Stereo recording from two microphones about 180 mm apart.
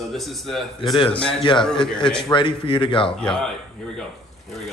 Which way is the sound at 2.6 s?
30° left (ahead or behind).